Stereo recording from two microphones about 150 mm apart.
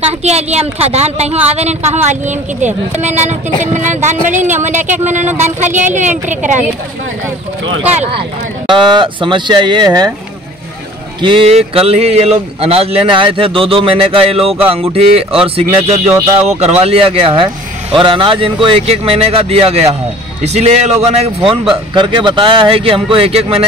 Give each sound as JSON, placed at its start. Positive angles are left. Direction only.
{"t": 0.2, "sound": "a woman's voice", "side_deg": -45}
{"t": 7.9, "sound": "a woman's voice", "side_deg": -45}
{"t": 8.6, "sound": "speech", "side_deg": -30}
{"t": 11.1, "sound": "speech", "side_deg": -35}
{"t": 16.1, "sound": "speech", "side_deg": -15}
{"t": 16.4, "sound": "speech", "side_deg": -45}